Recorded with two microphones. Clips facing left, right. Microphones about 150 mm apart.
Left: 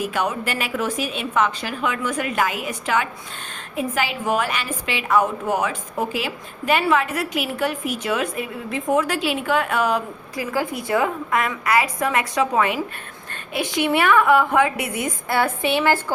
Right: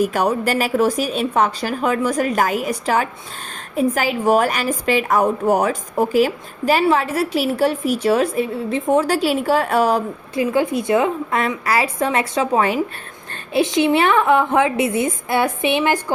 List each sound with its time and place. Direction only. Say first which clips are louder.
0.0 s a woman's voice: right 6 dB; 40° right (ahead or behind)
10.4 s a woman's voice: right 7 dB; 25° right (ahead or behind)